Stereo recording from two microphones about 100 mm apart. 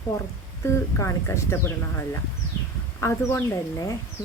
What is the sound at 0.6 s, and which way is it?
Speech, 25° left (ahead or behind).